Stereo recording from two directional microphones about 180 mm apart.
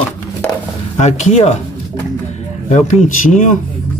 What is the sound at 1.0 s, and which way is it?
Speech, 40° left (ahead or behind).